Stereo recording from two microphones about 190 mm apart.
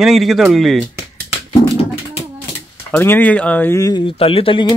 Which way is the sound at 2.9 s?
10° left (ahead or behind).